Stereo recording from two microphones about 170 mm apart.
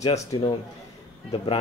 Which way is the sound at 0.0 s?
40° left (ahead or behind).